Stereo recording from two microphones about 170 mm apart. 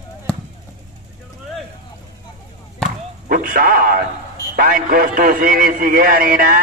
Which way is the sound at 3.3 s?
55° right (ahead or behind).